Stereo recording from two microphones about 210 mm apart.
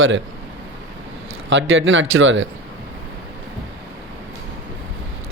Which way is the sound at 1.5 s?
65° right (ahead or behind).